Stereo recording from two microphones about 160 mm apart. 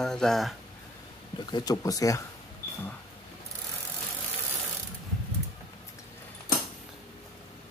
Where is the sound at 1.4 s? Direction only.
25° left (ahead or behind).